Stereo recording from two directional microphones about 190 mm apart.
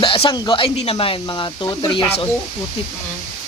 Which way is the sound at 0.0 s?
25° left (ahead or behind).